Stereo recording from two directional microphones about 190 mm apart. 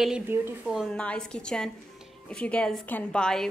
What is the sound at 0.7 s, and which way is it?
A woman's voice, centre (ahead or behind).